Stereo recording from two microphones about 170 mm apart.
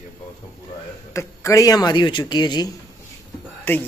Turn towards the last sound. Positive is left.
turn(degrees=10)  # may be behind; listen again after turning